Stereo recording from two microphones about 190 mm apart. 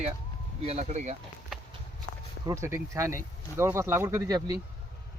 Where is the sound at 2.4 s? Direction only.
15° right (ahead or behind).